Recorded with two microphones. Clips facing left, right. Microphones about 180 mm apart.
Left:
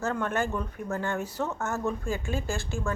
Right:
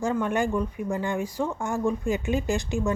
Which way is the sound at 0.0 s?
10° right (ahead or behind).